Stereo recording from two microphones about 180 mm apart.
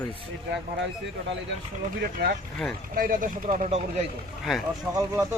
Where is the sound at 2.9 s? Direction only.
50° right (ahead or behind).